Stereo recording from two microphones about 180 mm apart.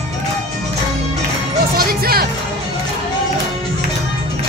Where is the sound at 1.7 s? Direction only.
55° right (ahead or behind).